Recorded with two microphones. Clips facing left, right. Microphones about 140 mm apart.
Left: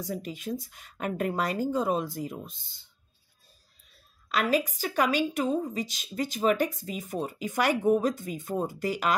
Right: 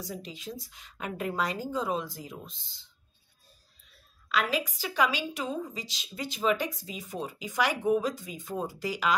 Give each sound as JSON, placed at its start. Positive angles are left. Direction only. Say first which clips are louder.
{"t": 0.0, "sound": "a woman's voice", "louder": "left 5 dB", "side_deg": 55}
{"t": 4.3, "sound": "a woman's voice", "louder": "left 3 dB", "side_deg": 45}